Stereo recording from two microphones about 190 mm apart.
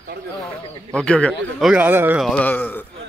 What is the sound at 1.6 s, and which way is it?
Speech, 5° right (ahead or behind).